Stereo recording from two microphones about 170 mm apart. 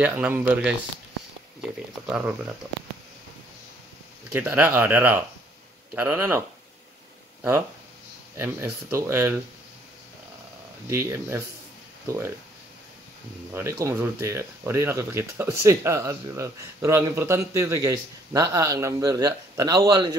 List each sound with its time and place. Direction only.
0.0 s speech: 10° right (ahead or behind)
2.0 s speech: 5° right (ahead or behind)
4.3 s speech: 10° right (ahead or behind)
8.4 s speech: 15° right (ahead or behind)
10.9 s speech: 15° right (ahead or behind)
13.5 s speech: 15° right (ahead or behind)